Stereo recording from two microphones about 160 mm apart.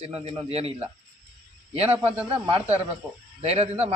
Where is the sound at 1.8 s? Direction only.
10° right (ahead or behind).